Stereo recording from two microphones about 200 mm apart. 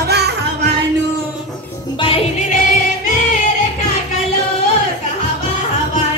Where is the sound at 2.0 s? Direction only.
30° left (ahead or behind).